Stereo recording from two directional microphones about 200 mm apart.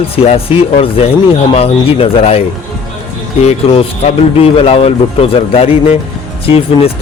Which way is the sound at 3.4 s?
30° left (ahead or behind).